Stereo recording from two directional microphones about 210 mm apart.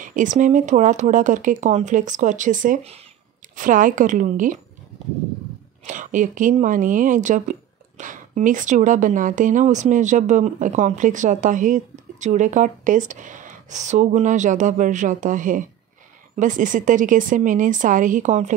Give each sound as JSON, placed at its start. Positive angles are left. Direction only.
{"t": 0.0, "sound": "a woman's voice", "side_deg": -40}
{"t": 5.9, "sound": "a woman's voice", "side_deg": -40}